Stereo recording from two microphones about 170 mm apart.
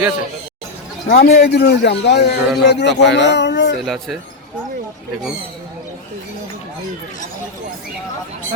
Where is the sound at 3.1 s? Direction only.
90° left.